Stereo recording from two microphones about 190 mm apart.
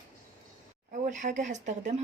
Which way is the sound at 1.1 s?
40° right (ahead or behind).